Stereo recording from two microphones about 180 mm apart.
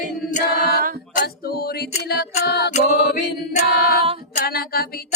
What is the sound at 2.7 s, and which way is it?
A capella, 40° left (ahead or behind).